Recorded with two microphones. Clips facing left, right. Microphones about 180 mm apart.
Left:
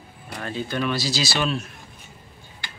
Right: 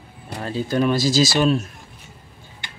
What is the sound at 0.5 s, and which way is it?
Speech, 40° right (ahead or behind).